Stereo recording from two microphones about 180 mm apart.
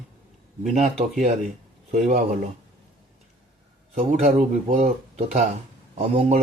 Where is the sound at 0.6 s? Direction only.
45° right (ahead or behind).